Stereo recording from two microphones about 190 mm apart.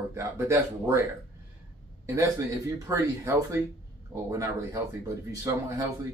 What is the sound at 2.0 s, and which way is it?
Speech, 15° right (ahead or behind).